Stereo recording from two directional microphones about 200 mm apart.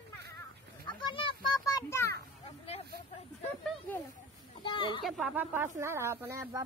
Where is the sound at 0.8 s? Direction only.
25° left (ahead or behind).